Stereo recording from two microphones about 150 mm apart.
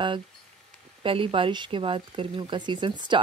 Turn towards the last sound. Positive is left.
turn(degrees=-30)  # may be behind; listen again after turning